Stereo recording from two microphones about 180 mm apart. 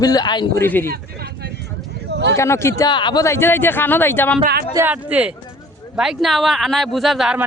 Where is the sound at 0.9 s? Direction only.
65° right (ahead or behind).